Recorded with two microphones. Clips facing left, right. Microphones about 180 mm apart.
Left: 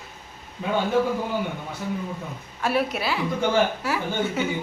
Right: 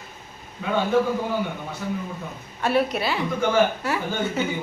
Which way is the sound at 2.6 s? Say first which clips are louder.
Right 2 dB; centre (ahead or behind).